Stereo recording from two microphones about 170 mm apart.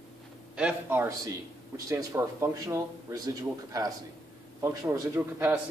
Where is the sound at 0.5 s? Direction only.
10° right (ahead or behind).